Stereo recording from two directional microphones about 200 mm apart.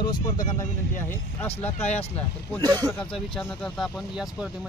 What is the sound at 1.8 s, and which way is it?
Speech, 35° left (ahead or behind).